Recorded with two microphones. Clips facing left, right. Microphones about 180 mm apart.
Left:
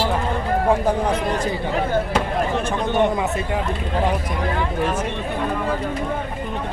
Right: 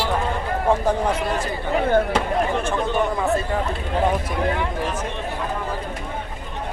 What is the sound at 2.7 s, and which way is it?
Speech, 15° left (ahead or behind).